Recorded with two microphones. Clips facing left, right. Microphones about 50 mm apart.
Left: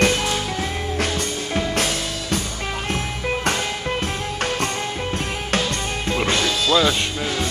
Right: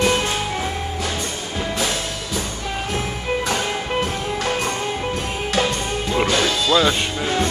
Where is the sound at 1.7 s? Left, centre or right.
Left.